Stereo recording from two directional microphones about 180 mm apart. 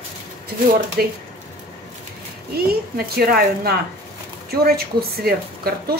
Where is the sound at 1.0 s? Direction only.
55° right (ahead or behind).